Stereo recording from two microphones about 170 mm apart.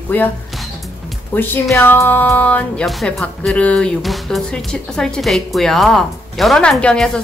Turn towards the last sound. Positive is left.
turn(degrees=5)  # may be behind; listen again after turning